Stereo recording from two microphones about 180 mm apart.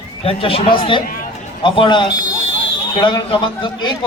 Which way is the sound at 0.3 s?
30° left (ahead or behind).